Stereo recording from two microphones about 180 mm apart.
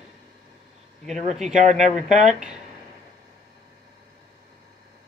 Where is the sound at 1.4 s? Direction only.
40° right (ahead or behind).